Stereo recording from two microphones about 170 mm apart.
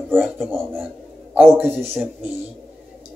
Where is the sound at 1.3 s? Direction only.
10° right (ahead or behind).